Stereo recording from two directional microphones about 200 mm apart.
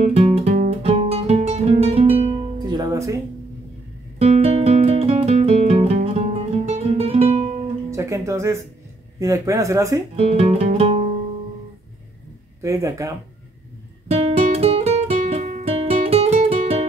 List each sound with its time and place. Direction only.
0.0 s music: 30° right (ahead or behind); by 3.2 s 15° right (ahead or behind)
4.2 s music: 30° right (ahead or behind)
7.9 s music: 15° right (ahead or behind)
9.2 s speech: 15° right (ahead or behind)
10.1 s music: 30° right (ahead or behind)
12.6 s speech: 15° right (ahead or behind)
14.0 s guitar: 30° right (ahead or behind)